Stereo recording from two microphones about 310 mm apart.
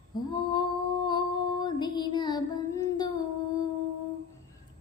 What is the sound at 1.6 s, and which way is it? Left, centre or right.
Music, centre.